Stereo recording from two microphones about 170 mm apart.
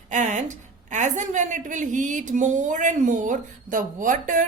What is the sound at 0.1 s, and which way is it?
A woman's voice, 45° right (ahead or behind).